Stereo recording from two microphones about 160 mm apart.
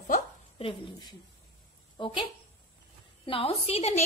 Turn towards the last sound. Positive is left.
turn(degrees=40)  # may be behind; listen again after turning